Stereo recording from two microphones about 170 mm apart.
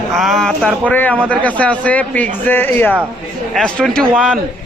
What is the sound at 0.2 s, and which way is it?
Speech, centre (ahead or behind).